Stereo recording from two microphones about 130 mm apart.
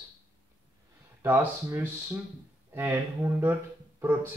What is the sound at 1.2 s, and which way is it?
Speech, 15° right (ahead or behind).